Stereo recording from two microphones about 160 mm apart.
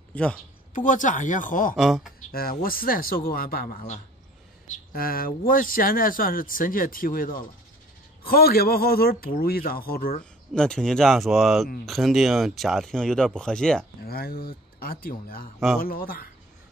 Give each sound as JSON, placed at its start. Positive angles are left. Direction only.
{"t": 0.1, "sound": "speech", "side_deg": 10}
{"t": 0.7, "sound": "speech", "side_deg": 55}
{"t": 1.8, "sound": "speech", "side_deg": 0}
{"t": 2.6, "sound": "speech", "side_deg": 65}
{"t": 4.9, "sound": "a man's voice", "side_deg": 65}
{"t": 10.5, "sound": "speech", "side_deg": 5}
{"t": 14.0, "sound": "a man's voice", "side_deg": 70}